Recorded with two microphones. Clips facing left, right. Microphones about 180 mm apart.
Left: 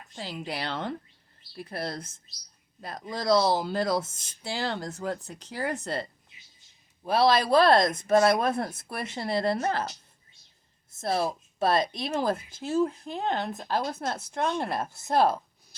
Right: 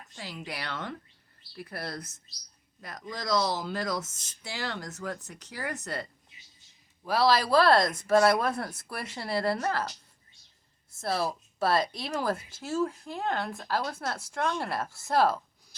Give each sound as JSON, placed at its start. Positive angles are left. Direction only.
{"t": 0.2, "sound": "speech", "side_deg": 30}
{"t": 11.0, "sound": "speech", "side_deg": 20}